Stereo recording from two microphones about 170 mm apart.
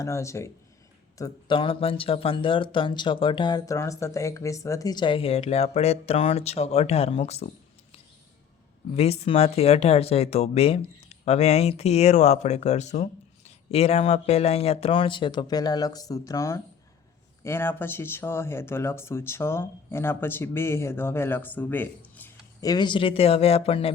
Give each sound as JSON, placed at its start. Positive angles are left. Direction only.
{"t": 0.0, "sound": "speech", "side_deg": 15}
{"t": 1.2, "sound": "speech", "side_deg": 30}
{"t": 9.0, "sound": "speech", "side_deg": 35}
{"t": 22.6, "sound": "speech", "side_deg": 25}